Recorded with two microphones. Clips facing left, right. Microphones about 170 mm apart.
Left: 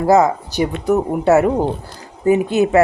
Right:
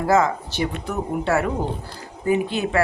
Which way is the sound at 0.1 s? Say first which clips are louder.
Left 6 dB; 40° left (ahead or behind).